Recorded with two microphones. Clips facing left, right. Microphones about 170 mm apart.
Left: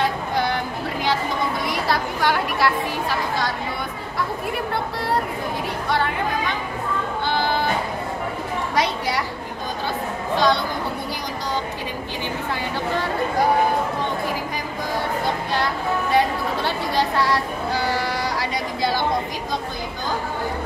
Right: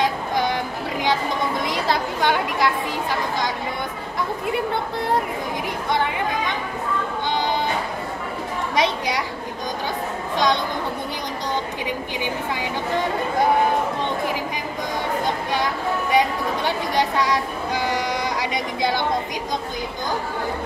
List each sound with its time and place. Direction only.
0.0 s a sound: 15° right (ahead or behind)
1.6 s chatter: 20° right (ahead or behind)
5.9 s speech: 20° right (ahead or behind)
7.2 s music: 20° right (ahead or behind)
8.7 s a woman's voice: 20° right (ahead or behind)
10.3 s a woman's voice: 20° right (ahead or behind)
15.2 s a sound: 15° right (ahead or behind)